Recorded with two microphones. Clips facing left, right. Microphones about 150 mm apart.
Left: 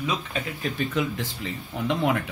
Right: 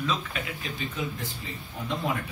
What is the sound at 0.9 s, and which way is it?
Speech, 85° left.